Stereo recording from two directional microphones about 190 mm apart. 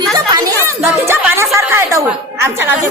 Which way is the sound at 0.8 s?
10° right (ahead or behind).